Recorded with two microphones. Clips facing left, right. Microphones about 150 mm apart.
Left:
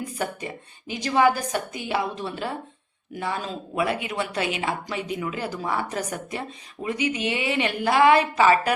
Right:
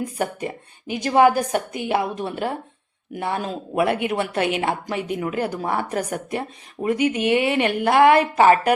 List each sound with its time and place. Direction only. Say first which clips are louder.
0.3 s speech: right 5 dB; 55° right (ahead or behind)